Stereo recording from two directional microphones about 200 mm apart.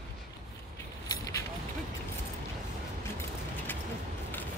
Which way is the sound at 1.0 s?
20° left (ahead or behind).